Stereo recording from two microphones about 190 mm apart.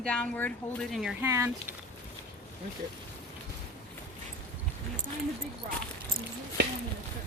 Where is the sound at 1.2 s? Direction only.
15° right (ahead or behind).